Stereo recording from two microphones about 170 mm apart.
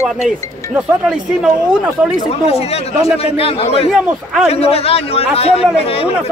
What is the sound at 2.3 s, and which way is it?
A man's voice, 35° left (ahead or behind).